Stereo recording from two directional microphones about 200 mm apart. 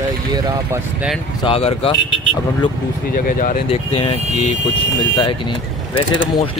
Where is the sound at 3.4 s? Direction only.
35° left (ahead or behind).